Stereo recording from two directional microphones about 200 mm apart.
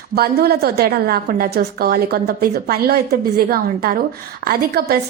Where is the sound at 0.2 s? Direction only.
55° right (ahead or behind).